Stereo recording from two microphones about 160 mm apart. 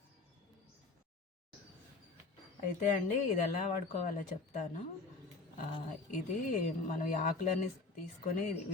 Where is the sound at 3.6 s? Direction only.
50° left (ahead or behind).